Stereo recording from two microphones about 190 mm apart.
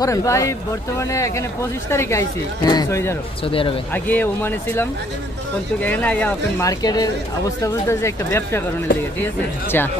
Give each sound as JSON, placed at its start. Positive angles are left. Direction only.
{"t": 0.0, "sound": "speech", "side_deg": 15}
{"t": 3.4, "sound": "speech", "side_deg": 30}
{"t": 3.9, "sound": "speech", "side_deg": 10}